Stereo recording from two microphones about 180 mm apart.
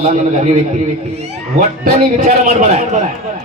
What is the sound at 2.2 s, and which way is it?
Speech, 40° right (ahead or behind).